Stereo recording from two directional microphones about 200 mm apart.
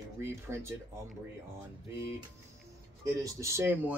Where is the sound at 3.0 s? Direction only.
15° right (ahead or behind).